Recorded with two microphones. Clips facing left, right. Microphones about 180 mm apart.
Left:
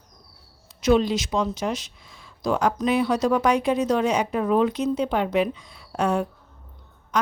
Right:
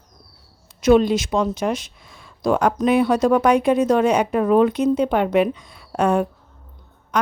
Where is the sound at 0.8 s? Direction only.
50° right (ahead or behind).